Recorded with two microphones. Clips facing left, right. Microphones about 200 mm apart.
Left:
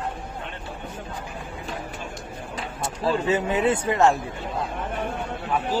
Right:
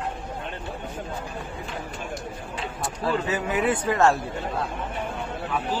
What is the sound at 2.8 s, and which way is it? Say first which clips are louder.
Speech: left 2 dB; 25° left (ahead or behind).